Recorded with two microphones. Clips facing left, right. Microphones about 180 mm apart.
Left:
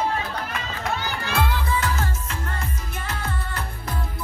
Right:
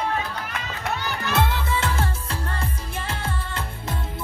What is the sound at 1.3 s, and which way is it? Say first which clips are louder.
Music: even; 25° right (ahead or behind).